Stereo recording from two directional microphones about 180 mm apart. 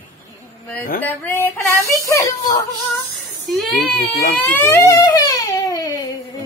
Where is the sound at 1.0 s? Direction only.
10° left (ahead or behind).